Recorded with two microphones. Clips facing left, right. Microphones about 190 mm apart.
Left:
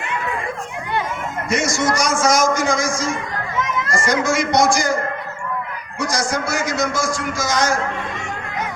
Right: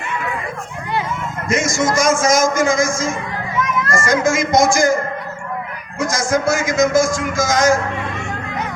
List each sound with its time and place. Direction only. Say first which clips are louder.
1.6 s a man's voice: right 5 dB; 45° right (ahead or behind)
6.0 s a man's voice: right 4 dB; 45° right (ahead or behind)